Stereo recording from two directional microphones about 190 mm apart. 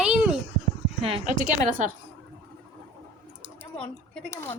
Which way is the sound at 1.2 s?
45° right (ahead or behind).